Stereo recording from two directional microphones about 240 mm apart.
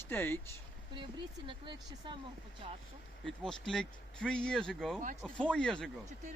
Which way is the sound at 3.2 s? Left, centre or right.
Centre.